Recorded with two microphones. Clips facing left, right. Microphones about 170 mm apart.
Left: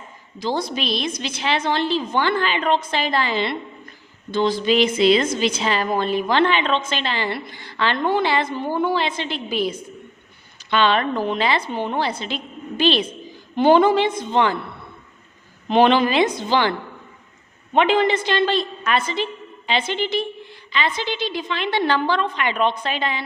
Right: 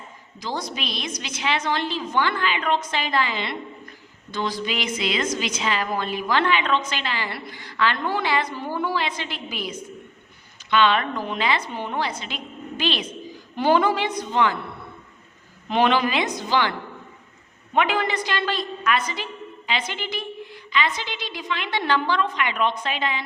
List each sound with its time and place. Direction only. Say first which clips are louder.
0.3 s a woman's voice: left 6 dB; 30° left (ahead or behind)
15.7 s a woman's voice: left 5 dB; 30° left (ahead or behind)
17.7 s a woman's voice: left 5 dB; 25° left (ahead or behind)